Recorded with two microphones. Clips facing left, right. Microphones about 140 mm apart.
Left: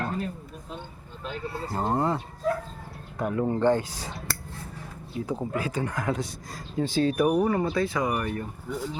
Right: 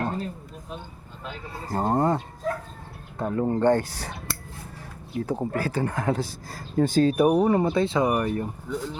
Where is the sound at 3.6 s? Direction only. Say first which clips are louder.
Right 2 dB; 65° right (ahead or behind).